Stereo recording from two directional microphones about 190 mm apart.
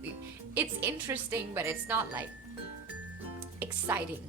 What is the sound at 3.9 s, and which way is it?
Speech, 10° right (ahead or behind).